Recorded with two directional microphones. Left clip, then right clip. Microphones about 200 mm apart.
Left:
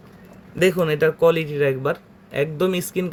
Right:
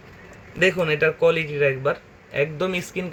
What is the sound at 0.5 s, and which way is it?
Speech, 50° left (ahead or behind).